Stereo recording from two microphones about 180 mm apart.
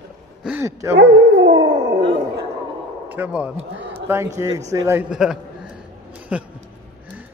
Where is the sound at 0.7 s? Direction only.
15° right (ahead or behind).